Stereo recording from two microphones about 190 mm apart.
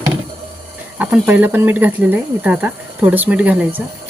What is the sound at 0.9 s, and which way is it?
Speech, 5° right (ahead or behind).